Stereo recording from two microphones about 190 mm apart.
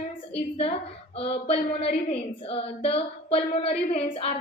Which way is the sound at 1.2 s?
30° left (ahead or behind).